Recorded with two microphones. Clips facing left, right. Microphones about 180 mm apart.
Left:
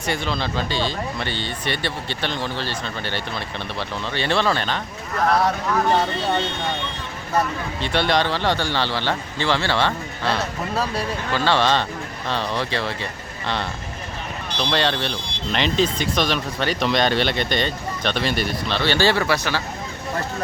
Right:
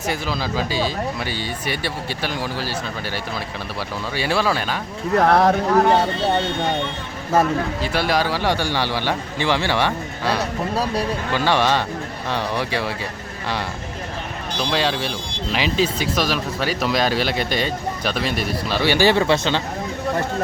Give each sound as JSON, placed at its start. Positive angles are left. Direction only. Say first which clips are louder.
{"t": 0.0, "sound": "speech", "louder": "even", "side_deg": -5}
{"t": 5.1, "sound": "speech", "louder": "right 5 dB", "side_deg": -60}
{"t": 5.6, "sound": "speech", "louder": "right 4 dB", "side_deg": -40}
{"t": 7.8, "sound": "a man's voice", "louder": "left 4 dB", "side_deg": -5}
{"t": 14.6, "sound": "speech", "louder": "even", "side_deg": -5}
{"t": 18.8, "sound": "speech", "louder": "right 3 dB", "side_deg": -15}